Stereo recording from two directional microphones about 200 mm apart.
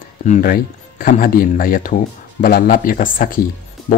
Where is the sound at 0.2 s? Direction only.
40° left (ahead or behind).